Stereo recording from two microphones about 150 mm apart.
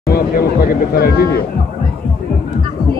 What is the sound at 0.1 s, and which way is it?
Speech, 85° left.